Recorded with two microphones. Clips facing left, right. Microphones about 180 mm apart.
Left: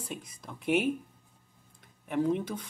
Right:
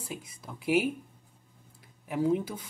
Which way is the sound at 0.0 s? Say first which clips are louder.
Even; 5° right (ahead or behind).